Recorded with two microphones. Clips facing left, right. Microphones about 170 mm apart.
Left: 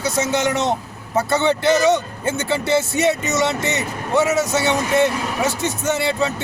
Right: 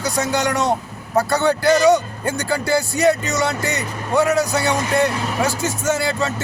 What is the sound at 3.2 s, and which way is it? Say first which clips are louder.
Speech: left 1 dB; 20° left (ahead or behind).